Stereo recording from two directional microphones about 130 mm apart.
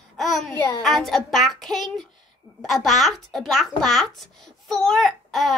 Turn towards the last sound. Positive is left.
turn(degrees=0)  # may be behind; listen again after turning